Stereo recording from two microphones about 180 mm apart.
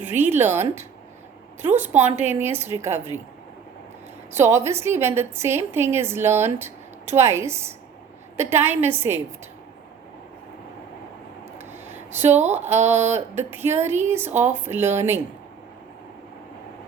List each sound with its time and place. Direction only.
0.0 s a woman's voice: 10° right (ahead or behind)
4.4 s a woman's voice: 15° right (ahead or behind)
11.5 s a sound: 10° right (ahead or behind)
12.3 s speech: 40° right (ahead or behind)
12.5 s a woman's voice: 10° right (ahead or behind)